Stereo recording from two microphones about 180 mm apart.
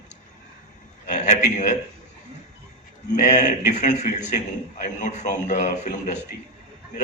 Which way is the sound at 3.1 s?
45° left (ahead or behind).